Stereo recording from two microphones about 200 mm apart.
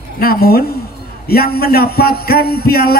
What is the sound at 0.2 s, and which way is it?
A man's voice, 50° left (ahead or behind).